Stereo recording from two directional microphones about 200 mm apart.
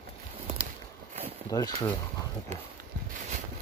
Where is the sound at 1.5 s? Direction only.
20° left (ahead or behind).